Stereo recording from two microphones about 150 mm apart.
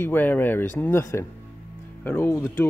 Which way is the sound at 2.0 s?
15° left (ahead or behind).